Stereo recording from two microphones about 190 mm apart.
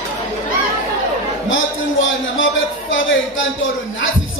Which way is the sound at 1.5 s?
85° left.